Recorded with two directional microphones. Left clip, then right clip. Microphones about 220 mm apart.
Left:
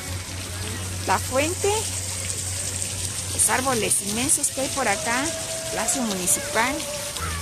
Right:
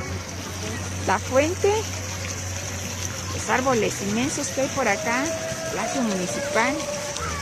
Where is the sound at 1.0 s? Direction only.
10° left (ahead or behind).